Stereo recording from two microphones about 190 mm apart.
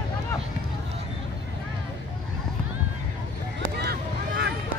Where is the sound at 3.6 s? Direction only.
55° right (ahead or behind).